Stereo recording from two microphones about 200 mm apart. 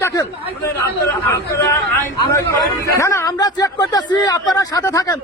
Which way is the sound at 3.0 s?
15° left (ahead or behind).